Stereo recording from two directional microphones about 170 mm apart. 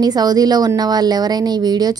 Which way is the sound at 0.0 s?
25° right (ahead or behind).